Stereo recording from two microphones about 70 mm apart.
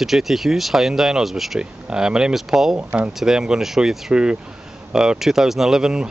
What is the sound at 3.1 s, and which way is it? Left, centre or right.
Speech, centre.